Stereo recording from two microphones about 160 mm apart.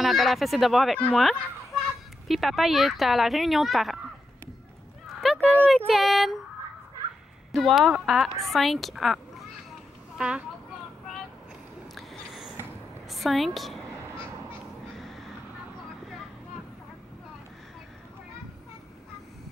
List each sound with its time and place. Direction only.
0.0 s a child's voice: centre (ahead or behind)
5.0 s horse: centre (ahead or behind)
5.9 s a child's voice: centre (ahead or behind)
7.5 s a child's voice: centre (ahead or behind)
11.9 s a sound: centre (ahead or behind)
15.0 s crow: centre (ahead or behind)